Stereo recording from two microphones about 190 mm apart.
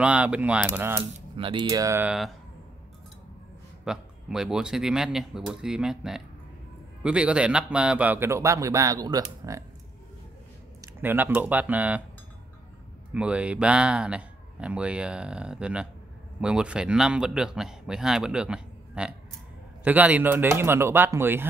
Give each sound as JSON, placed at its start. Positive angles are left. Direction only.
{"t": 0.0, "sound": "a man's voice", "side_deg": -5}
{"t": 1.3, "sound": "speech", "side_deg": -25}
{"t": 3.8, "sound": "a man's voice", "side_deg": -5}
{"t": 11.0, "sound": "a man's voice", "side_deg": -10}
{"t": 13.1, "sound": "a man's voice", "side_deg": -5}